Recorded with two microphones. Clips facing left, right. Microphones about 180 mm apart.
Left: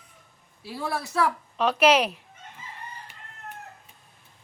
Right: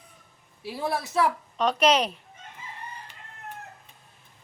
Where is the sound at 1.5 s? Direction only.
5° left (ahead or behind).